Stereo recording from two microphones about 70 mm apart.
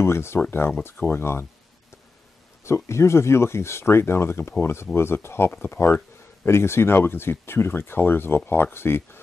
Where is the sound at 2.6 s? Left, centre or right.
Left.